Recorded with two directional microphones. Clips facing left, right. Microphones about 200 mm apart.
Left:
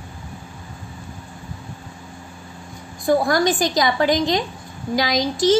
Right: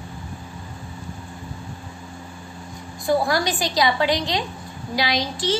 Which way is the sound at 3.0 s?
45° left (ahead or behind).